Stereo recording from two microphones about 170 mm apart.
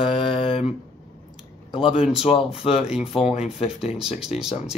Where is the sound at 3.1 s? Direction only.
40° left (ahead or behind).